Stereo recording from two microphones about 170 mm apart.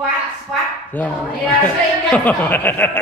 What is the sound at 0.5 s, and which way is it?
A woman's voice, 5° left (ahead or behind).